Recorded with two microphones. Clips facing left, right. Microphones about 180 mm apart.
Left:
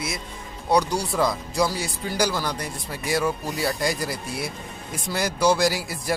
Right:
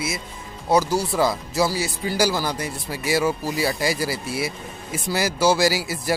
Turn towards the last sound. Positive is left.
turn(degrees=-5)  # may be behind; listen again after turning